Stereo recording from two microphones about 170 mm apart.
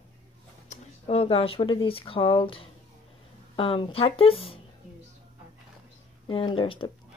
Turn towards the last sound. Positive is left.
turn(degrees=30)  # may be behind; listen again after turning